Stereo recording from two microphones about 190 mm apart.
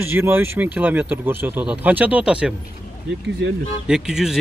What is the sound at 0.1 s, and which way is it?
Speech, 10° right (ahead or behind).